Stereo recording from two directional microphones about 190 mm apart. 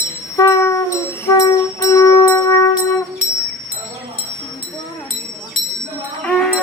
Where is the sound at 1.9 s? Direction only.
15° left (ahead or behind).